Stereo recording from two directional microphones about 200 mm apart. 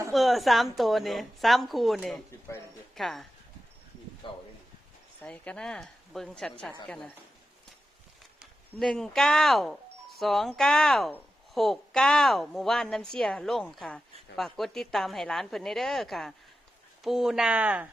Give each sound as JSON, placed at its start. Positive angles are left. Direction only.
{"t": 0.1, "sound": "a woman's voice", "side_deg": 0}
{"t": 4.2, "sound": "speech", "side_deg": 25}
{"t": 5.2, "sound": "a woman's voice", "side_deg": 5}
{"t": 8.4, "sound": "a woman's voice", "side_deg": 0}